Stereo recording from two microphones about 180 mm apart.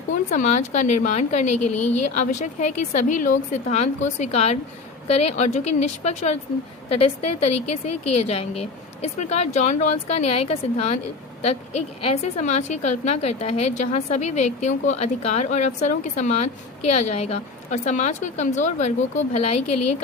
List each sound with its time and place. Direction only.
0.3 s a woman's voice: 40° left (ahead or behind)